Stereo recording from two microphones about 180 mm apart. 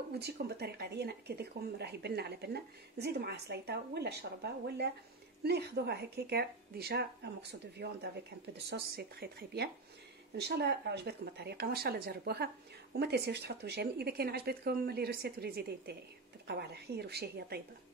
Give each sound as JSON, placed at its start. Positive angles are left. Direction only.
{"t": 0.2, "sound": "speech", "side_deg": -65}